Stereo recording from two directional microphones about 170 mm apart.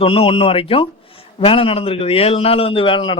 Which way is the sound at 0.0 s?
30° left (ahead or behind).